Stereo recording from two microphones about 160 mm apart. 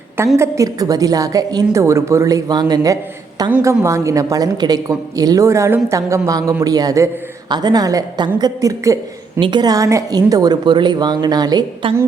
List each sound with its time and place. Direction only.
0.3 s a woman's voice: 20° right (ahead or behind)